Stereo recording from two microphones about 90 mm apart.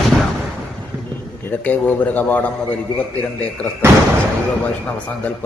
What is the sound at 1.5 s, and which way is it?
A man's voice, 20° left (ahead or behind).